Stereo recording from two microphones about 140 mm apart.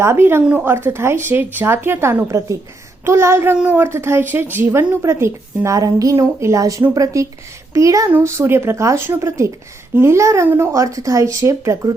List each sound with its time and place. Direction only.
0.0 s a woman's voice: 15° right (ahead or behind)